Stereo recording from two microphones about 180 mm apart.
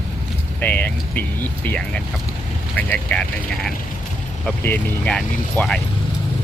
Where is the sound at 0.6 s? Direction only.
10° left (ahead or behind).